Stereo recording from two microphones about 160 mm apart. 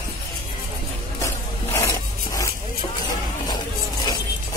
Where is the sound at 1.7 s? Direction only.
20° left (ahead or behind).